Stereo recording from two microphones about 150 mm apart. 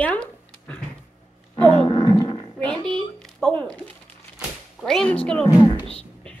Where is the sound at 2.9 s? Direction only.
5° left (ahead or behind).